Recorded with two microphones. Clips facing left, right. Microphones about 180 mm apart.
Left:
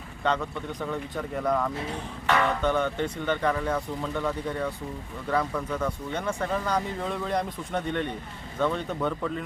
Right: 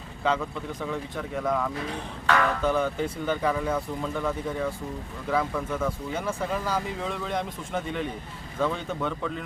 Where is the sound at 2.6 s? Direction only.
5° right (ahead or behind).